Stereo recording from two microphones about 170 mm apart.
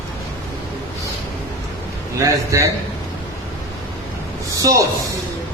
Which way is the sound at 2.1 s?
20° right (ahead or behind).